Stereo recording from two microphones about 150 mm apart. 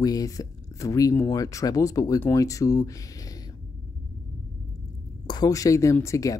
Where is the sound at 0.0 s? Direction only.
25° left (ahead or behind).